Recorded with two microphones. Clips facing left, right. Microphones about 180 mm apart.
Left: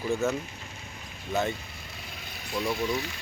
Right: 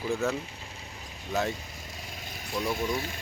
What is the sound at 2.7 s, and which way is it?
Speech, 50° right (ahead or behind).